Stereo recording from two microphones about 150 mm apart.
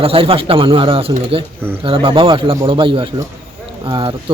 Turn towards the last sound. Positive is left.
turn(degrees=-30)  # may be behind; listen again after turning